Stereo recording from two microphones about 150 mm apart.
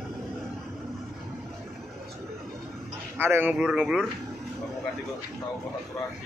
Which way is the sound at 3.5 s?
5° right (ahead or behind).